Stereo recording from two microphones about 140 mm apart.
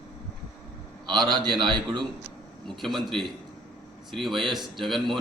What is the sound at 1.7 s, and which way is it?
Speech, 35° right (ahead or behind).